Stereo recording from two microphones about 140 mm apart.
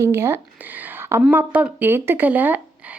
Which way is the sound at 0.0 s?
20° right (ahead or behind).